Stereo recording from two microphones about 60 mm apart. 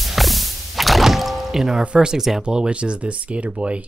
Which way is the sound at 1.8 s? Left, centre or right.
Centre.